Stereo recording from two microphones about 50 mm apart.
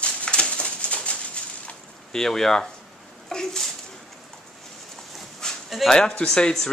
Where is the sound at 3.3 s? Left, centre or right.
Centre.